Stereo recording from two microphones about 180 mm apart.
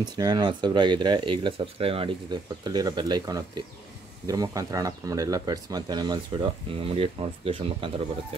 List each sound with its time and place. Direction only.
0.0 s speech: 25° right (ahead or behind)